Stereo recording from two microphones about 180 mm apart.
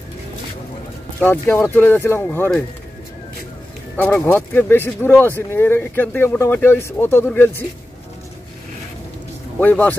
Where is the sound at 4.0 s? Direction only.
10° left (ahead or behind).